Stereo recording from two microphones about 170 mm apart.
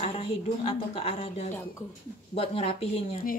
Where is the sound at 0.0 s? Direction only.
35° left (ahead or behind).